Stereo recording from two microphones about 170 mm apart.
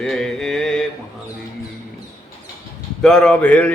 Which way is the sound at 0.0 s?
5° left (ahead or behind).